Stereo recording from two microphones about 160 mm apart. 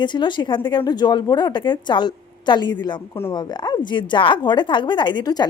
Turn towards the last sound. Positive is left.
turn(degrees=25)  # may be behind; listen again after turning